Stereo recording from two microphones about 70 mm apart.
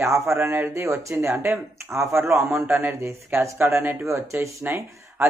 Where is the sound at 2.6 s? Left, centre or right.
Right.